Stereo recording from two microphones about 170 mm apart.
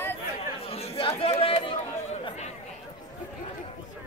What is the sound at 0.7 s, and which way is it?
Chatter, 35° left (ahead or behind).